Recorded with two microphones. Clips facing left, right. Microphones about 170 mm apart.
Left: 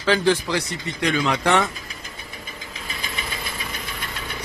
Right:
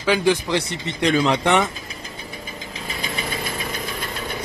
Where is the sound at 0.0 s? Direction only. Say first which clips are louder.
Right 1 dB; 15° right (ahead or behind); by 1.4 s 30° right (ahead or behind).